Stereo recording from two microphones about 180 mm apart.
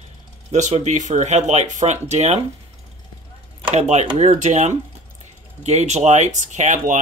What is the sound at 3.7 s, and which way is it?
Speech, 40° right (ahead or behind).